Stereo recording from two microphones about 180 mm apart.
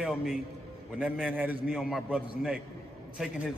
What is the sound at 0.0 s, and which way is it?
A man's voice, centre (ahead or behind).